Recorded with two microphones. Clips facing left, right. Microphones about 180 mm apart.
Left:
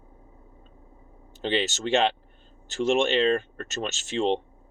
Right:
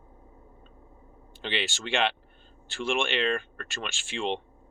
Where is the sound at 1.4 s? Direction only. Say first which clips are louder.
Left 6 dB; 40° left (ahead or behind).